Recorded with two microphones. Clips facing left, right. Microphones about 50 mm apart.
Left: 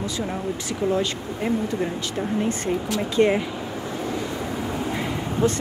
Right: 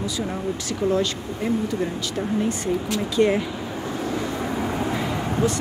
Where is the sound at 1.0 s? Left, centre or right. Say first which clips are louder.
Even; left.